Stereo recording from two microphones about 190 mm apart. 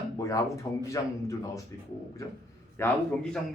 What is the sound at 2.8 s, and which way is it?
Speech, 15° left (ahead or behind).